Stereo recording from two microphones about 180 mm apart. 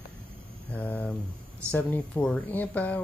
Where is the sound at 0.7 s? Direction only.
10° left (ahead or behind).